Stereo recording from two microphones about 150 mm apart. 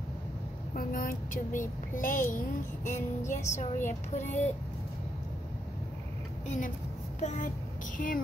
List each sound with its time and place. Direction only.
0.7 s a child's voice: 75° left (ahead or behind); by 4.5 s 50° left (ahead or behind)
6.4 s a woman's voice: 55° left (ahead or behind)
8.0 s speech: 70° left (ahead or behind)